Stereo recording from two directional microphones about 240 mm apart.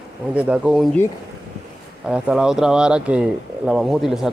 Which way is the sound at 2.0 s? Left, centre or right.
Centre.